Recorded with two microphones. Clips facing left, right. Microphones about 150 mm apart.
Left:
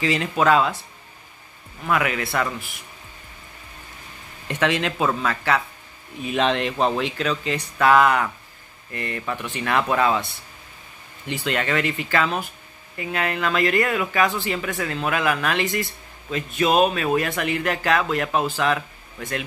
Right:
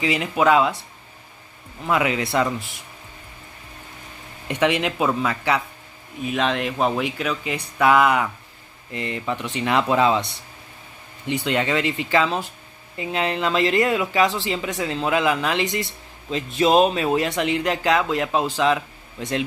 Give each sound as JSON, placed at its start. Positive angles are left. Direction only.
{"t": 0.0, "sound": "speech", "side_deg": -15}
{"t": 1.9, "sound": "speech", "side_deg": -20}
{"t": 4.5, "sound": "speech", "side_deg": -15}
{"t": 6.2, "sound": "speech", "side_deg": 0}
{"t": 11.2, "sound": "speech", "side_deg": -20}